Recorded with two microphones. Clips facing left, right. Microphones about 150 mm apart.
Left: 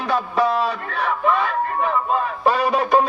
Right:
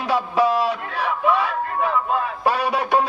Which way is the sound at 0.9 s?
10° right (ahead or behind).